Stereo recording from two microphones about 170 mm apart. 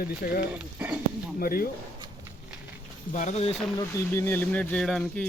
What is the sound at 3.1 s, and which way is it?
Speech, 50° left (ahead or behind).